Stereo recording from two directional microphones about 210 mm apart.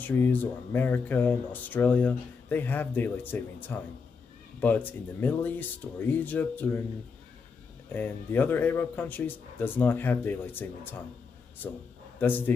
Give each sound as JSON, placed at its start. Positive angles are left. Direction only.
{"t": 0.0, "sound": "speech", "side_deg": 10}
{"t": 7.9, "sound": "speech", "side_deg": 10}
{"t": 12.2, "sound": "speech", "side_deg": 10}